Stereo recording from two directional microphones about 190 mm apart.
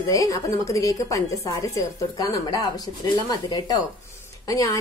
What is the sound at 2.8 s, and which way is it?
A woman's voice, 20° left (ahead or behind).